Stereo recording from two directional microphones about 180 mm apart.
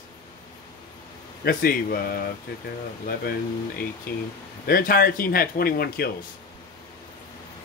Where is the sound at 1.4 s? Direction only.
55° left (ahead or behind).